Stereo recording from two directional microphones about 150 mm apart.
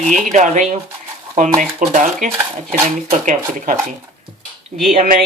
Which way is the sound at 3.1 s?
55° right (ahead or behind).